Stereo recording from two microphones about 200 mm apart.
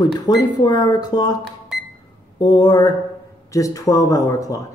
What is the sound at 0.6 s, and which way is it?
Speech, 20° left (ahead or behind).